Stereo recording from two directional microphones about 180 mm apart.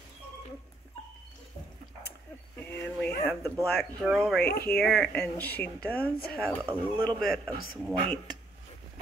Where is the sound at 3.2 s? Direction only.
5° left (ahead or behind).